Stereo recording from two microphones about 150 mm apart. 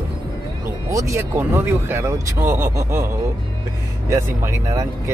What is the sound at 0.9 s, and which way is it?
Speech, 20° right (ahead or behind).